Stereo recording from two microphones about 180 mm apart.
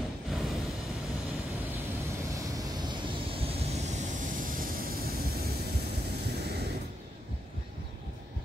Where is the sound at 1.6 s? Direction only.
15° right (ahead or behind); by 6.6 s 65° right (ahead or behind).